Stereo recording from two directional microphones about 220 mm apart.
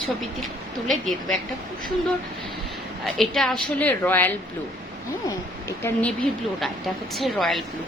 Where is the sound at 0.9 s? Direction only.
Centre (ahead or behind).